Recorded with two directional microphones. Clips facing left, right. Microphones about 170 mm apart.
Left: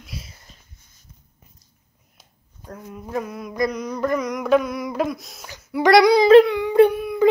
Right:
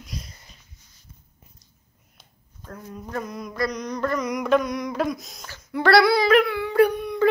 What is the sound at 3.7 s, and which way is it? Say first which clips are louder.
Mantra: left 3 dB; 5° left (ahead or behind).